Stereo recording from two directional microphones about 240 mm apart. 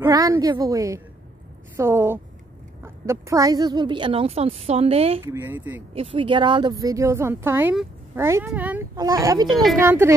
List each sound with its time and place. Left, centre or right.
0.0 s speech: centre
5.2 s speech: centre
5.9 s speech: right